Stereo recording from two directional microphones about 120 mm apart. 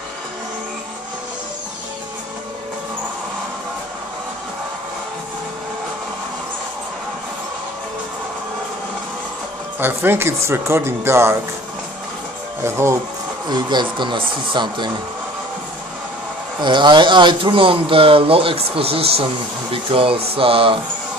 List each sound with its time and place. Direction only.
9.8 s speech: 20° right (ahead or behind)
12.6 s speech: 20° right (ahead or behind)
13.5 s speech: 40° right (ahead or behind)
16.6 s speech: 40° right (ahead or behind)